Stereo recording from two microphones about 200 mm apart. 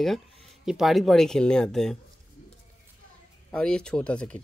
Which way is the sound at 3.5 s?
5° left (ahead or behind).